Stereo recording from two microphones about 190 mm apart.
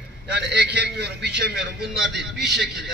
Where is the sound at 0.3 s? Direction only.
65° right (ahead or behind).